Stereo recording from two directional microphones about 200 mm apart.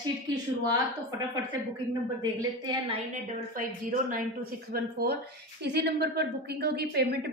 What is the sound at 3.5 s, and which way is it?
A woman's voice, 45° right (ahead or behind).